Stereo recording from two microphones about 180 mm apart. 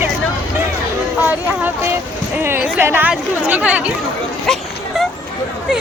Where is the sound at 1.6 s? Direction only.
15° right (ahead or behind).